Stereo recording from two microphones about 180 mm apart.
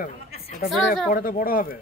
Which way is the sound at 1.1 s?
55° left (ahead or behind).